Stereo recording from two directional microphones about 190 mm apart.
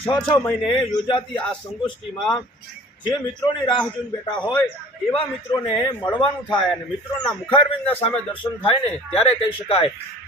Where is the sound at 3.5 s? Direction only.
25° left (ahead or behind).